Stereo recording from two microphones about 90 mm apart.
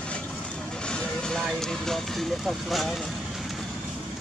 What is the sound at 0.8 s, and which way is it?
Vehicle, 10° left (ahead or behind).